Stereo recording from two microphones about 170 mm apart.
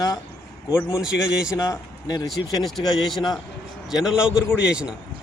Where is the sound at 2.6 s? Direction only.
Centre (ahead or behind).